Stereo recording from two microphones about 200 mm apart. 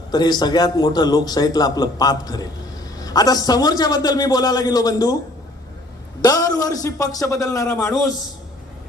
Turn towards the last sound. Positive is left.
turn(degrees=15)  # may be behind; listen again after turning